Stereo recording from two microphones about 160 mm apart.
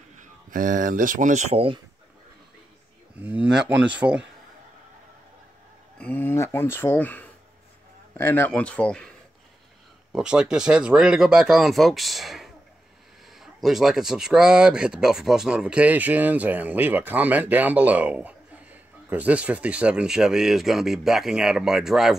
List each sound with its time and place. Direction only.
0.1 s speech: 55° right (ahead or behind); by 1.8 s 40° right (ahead or behind)
3.2 s speech: 10° right (ahead or behind)
5.9 s speech: 10° left (ahead or behind)
10.1 s speech: 5° right (ahead or behind)